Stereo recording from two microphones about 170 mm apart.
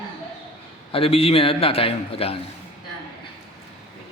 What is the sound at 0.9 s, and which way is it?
A man's voice, 35° left (ahead or behind).